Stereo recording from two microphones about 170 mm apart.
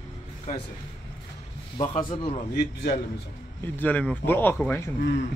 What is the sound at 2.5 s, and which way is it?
Speech, 70° left (ahead or behind).